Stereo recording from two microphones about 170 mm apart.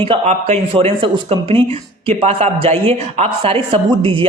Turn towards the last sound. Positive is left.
turn(degrees=-30)  # may be behind; listen again after turning